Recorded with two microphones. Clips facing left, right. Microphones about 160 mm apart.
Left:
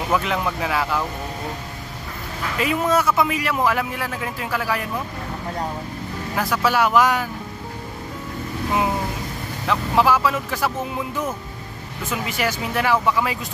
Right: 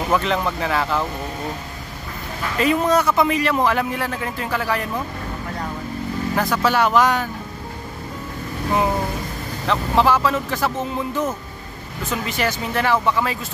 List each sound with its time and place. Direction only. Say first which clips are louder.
0.1 s speech: right 1 dB; 5° left (ahead or behind)
2.6 s speech: right 2 dB; 5° left (ahead or behind)
6.3 s speech: right 1 dB; 5° left (ahead or behind)
9.7 s speech: right 1 dB; 5° left (ahead or behind)